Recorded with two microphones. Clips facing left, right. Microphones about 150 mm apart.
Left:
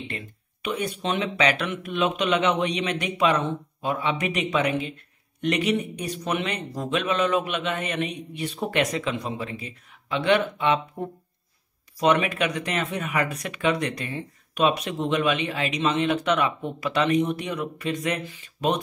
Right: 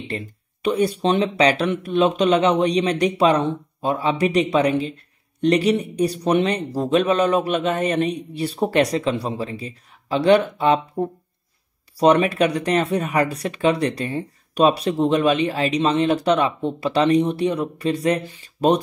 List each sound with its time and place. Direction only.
0.1 s speech: 35° right (ahead or behind)
12.0 s speech: 35° right (ahead or behind)